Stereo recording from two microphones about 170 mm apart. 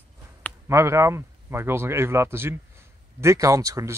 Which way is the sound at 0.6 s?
15° right (ahead or behind).